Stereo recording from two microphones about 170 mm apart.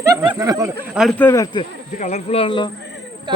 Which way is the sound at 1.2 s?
15° left (ahead or behind).